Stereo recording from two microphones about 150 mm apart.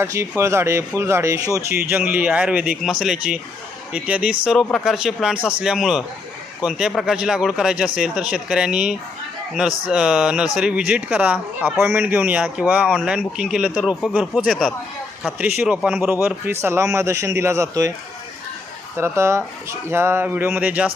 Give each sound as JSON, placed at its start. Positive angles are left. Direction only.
{"t": 0.0, "sound": "speech", "side_deg": -20}
{"t": 1.8, "sound": "speech", "side_deg": -10}
{"t": 18.9, "sound": "speech", "side_deg": -15}